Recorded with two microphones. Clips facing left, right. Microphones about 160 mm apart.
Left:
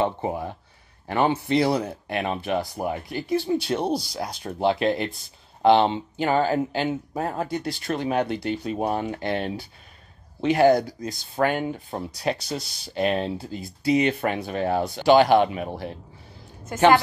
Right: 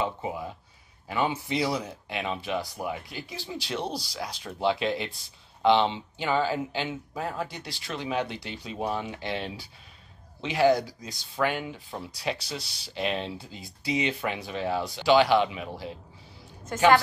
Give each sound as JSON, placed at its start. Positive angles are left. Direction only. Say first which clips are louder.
{"t": 0.0, "sound": "speech", "louder": "left 6 dB", "side_deg": 55}
{"t": 16.7, "sound": "a woman's voice", "louder": "left 4 dB", "side_deg": 10}